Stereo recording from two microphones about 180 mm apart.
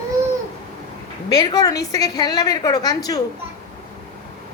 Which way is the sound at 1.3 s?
20° left (ahead or behind).